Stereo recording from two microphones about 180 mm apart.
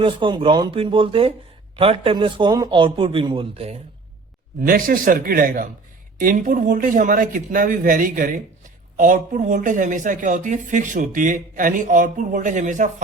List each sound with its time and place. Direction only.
0.0 s a man's voice: 25° right (ahead or behind)
4.6 s speech: 50° right (ahead or behind)